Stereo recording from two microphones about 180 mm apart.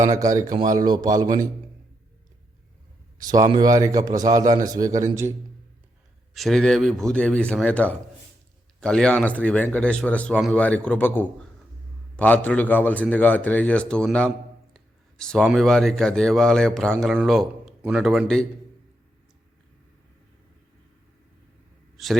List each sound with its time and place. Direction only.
0.0 s a man's voice: 20° right (ahead or behind)
3.2 s a man's voice: 20° right (ahead or behind)
6.3 s a man's voice: centre (ahead or behind)
21.9 s a man's voice: centre (ahead or behind)